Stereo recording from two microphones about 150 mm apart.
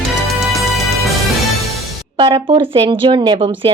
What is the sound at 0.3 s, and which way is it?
Music, centre (ahead or behind).